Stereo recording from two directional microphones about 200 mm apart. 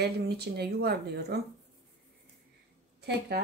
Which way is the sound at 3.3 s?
55° right (ahead or behind).